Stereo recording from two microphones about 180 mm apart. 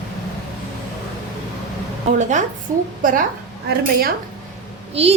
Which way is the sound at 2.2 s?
40° right (ahead or behind).